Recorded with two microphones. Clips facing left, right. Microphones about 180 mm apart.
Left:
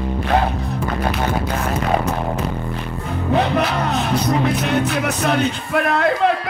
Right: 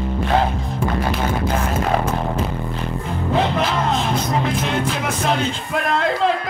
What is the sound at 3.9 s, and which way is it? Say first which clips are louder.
Music: left 2 dB; 65° left (ahead or behind).